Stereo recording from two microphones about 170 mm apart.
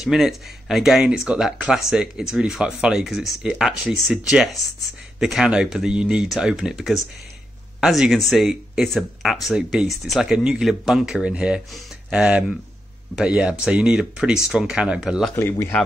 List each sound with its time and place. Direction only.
0.0 s speech: 5° right (ahead or behind)
15.3 s speech: 15° left (ahead or behind)